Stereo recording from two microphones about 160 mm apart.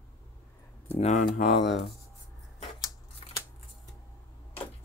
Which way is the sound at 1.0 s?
45° left (ahead or behind).